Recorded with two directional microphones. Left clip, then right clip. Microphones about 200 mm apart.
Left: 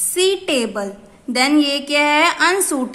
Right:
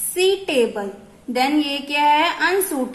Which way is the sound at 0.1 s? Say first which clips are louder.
Left 1 dB; 30° left (ahead or behind).